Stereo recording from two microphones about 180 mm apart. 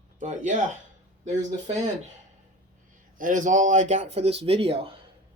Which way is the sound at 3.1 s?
45° right (ahead or behind).